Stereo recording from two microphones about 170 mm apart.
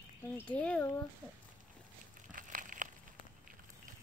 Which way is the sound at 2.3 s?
50° right (ahead or behind).